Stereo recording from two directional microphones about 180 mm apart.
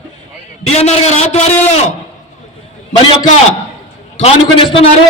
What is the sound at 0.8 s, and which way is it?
Speech, 40° left (ahead or behind).